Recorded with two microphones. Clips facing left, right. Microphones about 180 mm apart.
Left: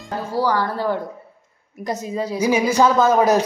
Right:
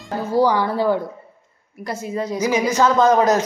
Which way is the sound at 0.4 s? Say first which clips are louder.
Right 3 dB; 15° right (ahead or behind).